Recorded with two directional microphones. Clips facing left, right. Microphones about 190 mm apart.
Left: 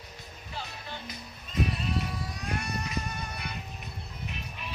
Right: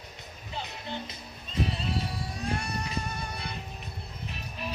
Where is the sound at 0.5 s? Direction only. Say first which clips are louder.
Right 4 dB; 20° right (ahead or behind).